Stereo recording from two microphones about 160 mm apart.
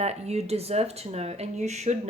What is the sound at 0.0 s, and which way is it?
Speech, 40° right (ahead or behind).